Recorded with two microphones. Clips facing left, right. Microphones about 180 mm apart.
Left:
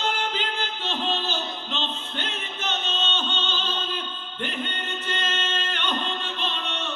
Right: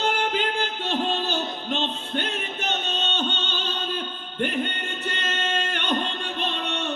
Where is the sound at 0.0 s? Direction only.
50° right (ahead or behind).